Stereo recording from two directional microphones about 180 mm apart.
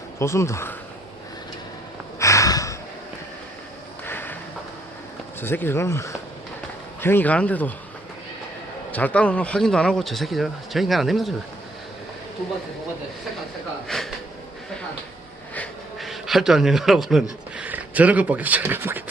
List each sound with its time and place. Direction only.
0.2 s speech: 15° left (ahead or behind)
2.1 s snort: 15° left (ahead or behind)
4.0 s a sound: 10° left (ahead or behind)
5.4 s speech: 10° left (ahead or behind)
8.9 s speech: 10° left (ahead or behind)
13.8 s speech: centre (ahead or behind)
15.5 s a sound: 5° left (ahead or behind)
17.6 s speech: 10° right (ahead or behind)